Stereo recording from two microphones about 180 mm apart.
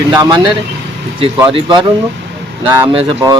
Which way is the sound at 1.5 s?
25° right (ahead or behind).